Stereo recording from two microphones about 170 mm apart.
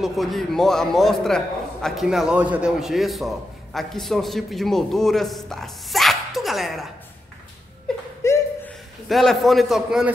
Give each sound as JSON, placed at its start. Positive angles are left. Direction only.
{"t": 0.0, "sound": "a man's voice", "side_deg": 0}
{"t": 8.2, "sound": "chuckle", "side_deg": 15}
{"t": 9.1, "sound": "a man's voice", "side_deg": 0}